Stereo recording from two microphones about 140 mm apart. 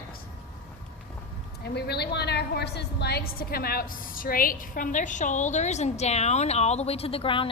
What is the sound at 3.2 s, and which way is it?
A woman's voice, 90° left.